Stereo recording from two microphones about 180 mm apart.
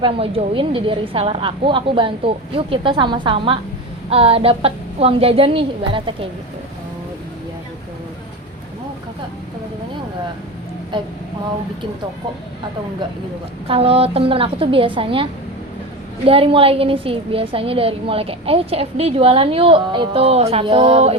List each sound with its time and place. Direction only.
0.0 s a woman's voice: 30° right (ahead or behind)
10.9 s a woman's voice: 25° right (ahead or behind)
13.7 s a woman's voice: 30° right (ahead or behind)